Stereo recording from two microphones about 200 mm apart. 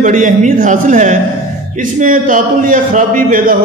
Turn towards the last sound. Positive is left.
turn(degrees=-45)  # may be behind; listen again after turning